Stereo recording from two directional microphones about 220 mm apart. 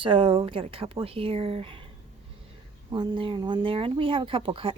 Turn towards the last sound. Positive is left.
turn(degrees=-25)  # may be behind; listen again after turning